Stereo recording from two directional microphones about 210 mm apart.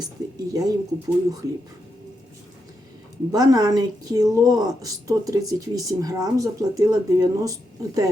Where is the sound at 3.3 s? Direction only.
20° right (ahead or behind).